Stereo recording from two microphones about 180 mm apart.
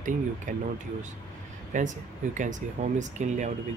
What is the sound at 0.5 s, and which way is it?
Speech, 45° right (ahead or behind).